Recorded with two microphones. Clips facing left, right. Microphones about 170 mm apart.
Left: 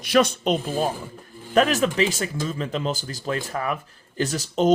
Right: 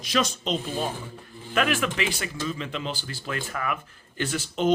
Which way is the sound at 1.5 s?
40° left (ahead or behind).